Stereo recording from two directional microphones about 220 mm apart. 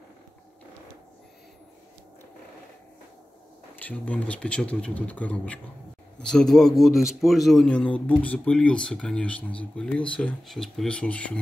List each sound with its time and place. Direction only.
3.8 s speech: 5° left (ahead or behind)